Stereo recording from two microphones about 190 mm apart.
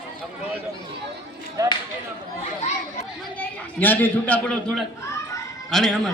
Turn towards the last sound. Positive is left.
turn(degrees=0)  # may be behind; listen again after turning